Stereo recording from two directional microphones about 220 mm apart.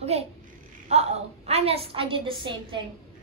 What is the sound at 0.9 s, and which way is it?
A woman's voice, 30° right (ahead or behind).